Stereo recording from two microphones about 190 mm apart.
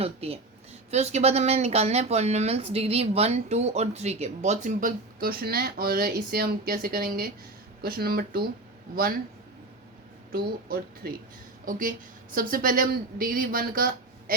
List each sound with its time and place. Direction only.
0.0 s a woman's voice: 30° right (ahead or behind); by 8.4 s 55° right (ahead or behind)
10.3 s speech: 50° right (ahead or behind)